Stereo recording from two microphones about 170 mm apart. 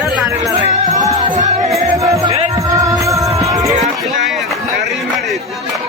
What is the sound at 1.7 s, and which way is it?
Music, 20° right (ahead or behind).